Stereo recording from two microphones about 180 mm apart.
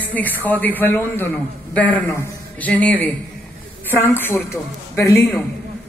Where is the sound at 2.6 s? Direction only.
10° left (ahead or behind).